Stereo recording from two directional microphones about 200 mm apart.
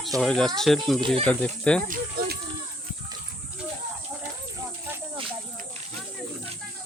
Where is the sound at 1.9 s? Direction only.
50° right (ahead or behind).